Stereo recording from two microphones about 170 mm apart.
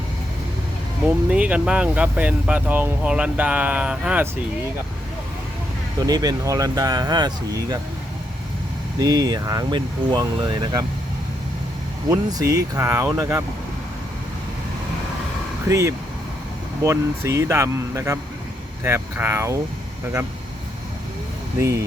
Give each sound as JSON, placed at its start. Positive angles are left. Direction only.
{"t": 1.3, "sound": "speech", "side_deg": -10}
{"t": 6.0, "sound": "speech", "side_deg": -20}
{"t": 9.0, "sound": "speech", "side_deg": -20}
{"t": 12.1, "sound": "speech", "side_deg": -20}
{"t": 15.7, "sound": "speech", "side_deg": -15}
{"t": 21.6, "sound": "speech", "side_deg": -15}